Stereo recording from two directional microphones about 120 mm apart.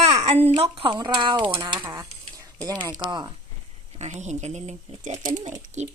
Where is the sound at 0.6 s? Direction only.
45° right (ahead or behind).